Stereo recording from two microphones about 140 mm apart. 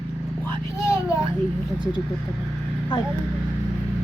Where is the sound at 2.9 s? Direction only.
30° left (ahead or behind).